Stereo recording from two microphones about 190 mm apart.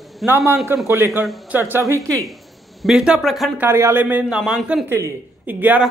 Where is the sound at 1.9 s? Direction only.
15° right (ahead or behind).